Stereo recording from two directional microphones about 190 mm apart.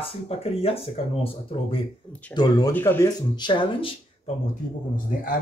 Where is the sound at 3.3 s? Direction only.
25° left (ahead or behind).